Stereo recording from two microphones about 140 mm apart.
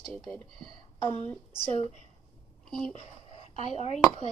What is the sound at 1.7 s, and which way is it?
Speech, 50° left (ahead or behind).